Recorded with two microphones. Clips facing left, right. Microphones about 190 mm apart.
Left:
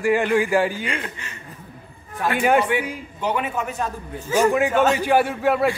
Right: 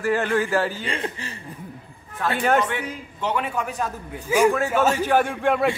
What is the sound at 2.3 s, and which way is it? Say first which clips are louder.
A man's voice: left 3 dB; 10° left (ahead or behind).